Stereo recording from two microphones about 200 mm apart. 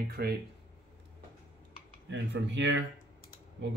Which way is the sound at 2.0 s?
65° right (ahead or behind).